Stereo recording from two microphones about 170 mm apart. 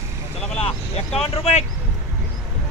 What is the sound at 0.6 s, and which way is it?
Speech, 35° left (ahead or behind).